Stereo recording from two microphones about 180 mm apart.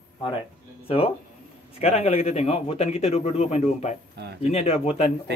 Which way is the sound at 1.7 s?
35° left (ahead or behind).